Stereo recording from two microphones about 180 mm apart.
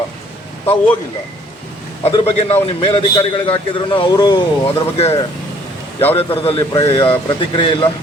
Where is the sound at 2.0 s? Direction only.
35° left (ahead or behind).